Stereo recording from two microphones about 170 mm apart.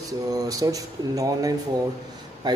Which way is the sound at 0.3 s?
20° right (ahead or behind).